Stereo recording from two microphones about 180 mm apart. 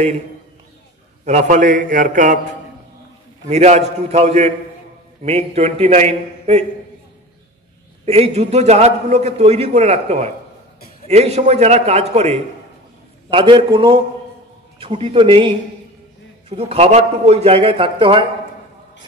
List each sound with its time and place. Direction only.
1.2 s a man's voice: 40° right (ahead or behind)
3.4 s a man's voice: 40° right (ahead or behind)
8.0 s a man's voice: 35° right (ahead or behind)